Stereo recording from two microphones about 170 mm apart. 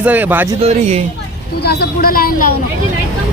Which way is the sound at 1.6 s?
65° left (ahead or behind).